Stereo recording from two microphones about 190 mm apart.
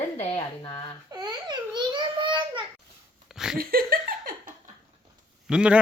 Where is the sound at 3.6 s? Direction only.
50° right (ahead or behind).